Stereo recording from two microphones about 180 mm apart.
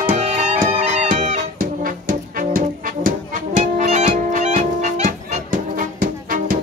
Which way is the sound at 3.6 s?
40° right (ahead or behind).